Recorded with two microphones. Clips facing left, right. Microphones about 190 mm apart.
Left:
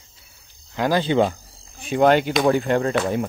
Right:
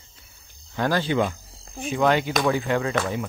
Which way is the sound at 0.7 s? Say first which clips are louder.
Left 3 dB; 15° left (ahead or behind).